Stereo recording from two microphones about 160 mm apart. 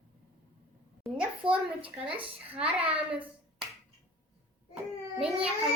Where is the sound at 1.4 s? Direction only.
35° right (ahead or behind).